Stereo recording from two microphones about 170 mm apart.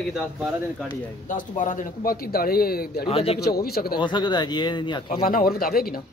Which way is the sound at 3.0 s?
35° left (ahead or behind).